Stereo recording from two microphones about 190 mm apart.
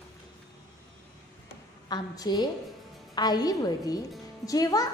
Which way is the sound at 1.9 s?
20° left (ahead or behind).